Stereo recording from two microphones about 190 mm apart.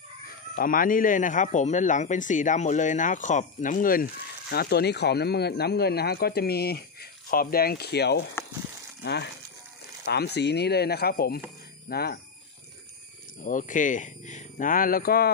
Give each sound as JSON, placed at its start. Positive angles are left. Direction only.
{"t": 0.6, "sound": "a man's voice", "side_deg": 45}
{"t": 13.4, "sound": "a man's voice", "side_deg": 45}